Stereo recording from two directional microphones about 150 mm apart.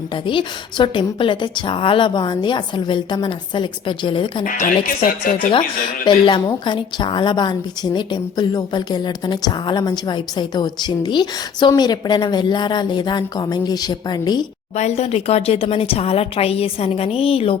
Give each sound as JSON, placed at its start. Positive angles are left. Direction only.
{"t": 0.1, "sound": "a woman's voice", "side_deg": 35}
{"t": 4.4, "sound": "speech", "side_deg": 65}
{"t": 6.1, "sound": "a woman's voice", "side_deg": 30}
{"t": 14.8, "sound": "a woman's voice", "side_deg": 45}